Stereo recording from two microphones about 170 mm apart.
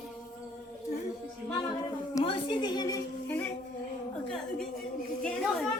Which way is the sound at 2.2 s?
30° left (ahead or behind).